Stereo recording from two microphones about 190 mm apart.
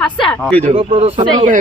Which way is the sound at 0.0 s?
5° left (ahead or behind).